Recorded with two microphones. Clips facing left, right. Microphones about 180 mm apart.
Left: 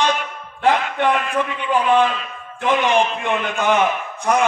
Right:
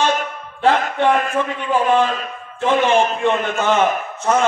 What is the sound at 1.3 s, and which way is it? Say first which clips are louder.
Speech: right 1 dB; 15° left (ahead or behind).